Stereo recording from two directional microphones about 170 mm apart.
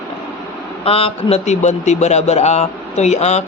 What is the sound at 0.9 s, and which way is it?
A man's voice, 35° left (ahead or behind).